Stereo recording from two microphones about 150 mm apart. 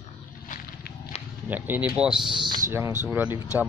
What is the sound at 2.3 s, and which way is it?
Speech, 30° right (ahead or behind).